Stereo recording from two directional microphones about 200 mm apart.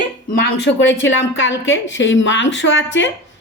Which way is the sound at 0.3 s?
55° left (ahead or behind).